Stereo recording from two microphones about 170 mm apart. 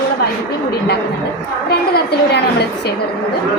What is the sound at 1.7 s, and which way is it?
A woman's voice, 70° left (ahead or behind).